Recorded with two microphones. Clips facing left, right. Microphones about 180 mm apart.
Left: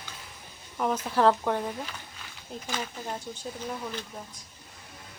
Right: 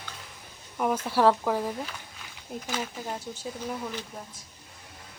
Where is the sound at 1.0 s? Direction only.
5° right (ahead or behind).